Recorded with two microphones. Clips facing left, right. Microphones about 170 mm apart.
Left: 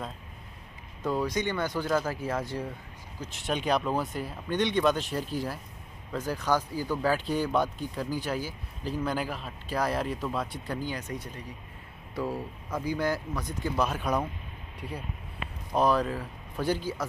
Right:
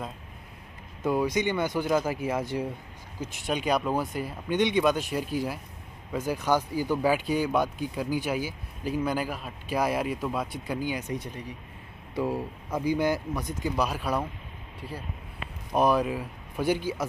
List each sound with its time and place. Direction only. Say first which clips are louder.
1.2 s speech: right 3 dB; 15° right (ahead or behind)
3.4 s speech: right 1 dB; 10° right (ahead or behind)
6.5 s speech: right 3 dB; 20° right (ahead or behind)
12.2 s speech: right 4 dB; 15° right (ahead or behind)
15.7 s speech: right 2 dB; 15° right (ahead or behind)